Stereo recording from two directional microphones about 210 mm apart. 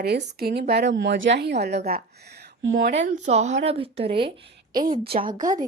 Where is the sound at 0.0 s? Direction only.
50° right (ahead or behind).